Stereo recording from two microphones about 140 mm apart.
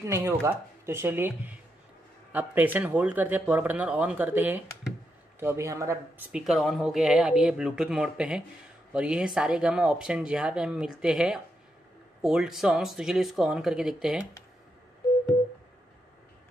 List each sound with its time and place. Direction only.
0.0 s speech: 20° right (ahead or behind)
6.3 s speech: centre (ahead or behind)